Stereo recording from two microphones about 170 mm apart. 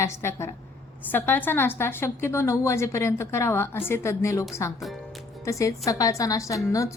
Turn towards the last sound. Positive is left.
turn(degrees=20)  # may be behind; listen again after turning